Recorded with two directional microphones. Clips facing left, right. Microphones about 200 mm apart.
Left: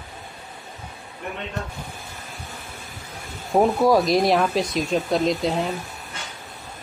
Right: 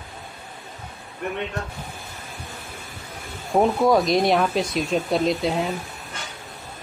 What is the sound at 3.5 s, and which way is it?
Speech, 5° left (ahead or behind).